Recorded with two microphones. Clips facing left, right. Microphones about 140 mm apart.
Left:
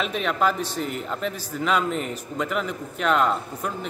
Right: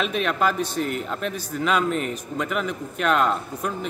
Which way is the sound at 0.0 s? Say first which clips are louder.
Right 1 dB; 5° right (ahead or behind).